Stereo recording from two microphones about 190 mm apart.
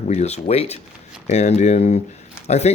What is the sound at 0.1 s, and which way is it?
Speech, 35° left (ahead or behind).